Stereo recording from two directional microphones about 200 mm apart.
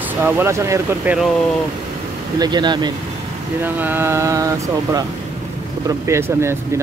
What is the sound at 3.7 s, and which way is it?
Speech, 10° right (ahead or behind).